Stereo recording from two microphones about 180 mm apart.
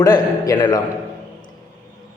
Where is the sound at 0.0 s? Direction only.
20° left (ahead or behind).